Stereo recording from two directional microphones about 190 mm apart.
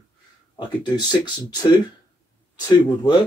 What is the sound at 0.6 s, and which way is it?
Speech, 25° left (ahead or behind).